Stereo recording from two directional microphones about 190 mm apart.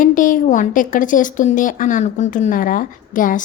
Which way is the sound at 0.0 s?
45° left (ahead or behind).